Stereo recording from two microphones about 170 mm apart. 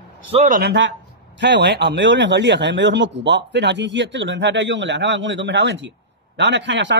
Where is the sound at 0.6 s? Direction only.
80° right.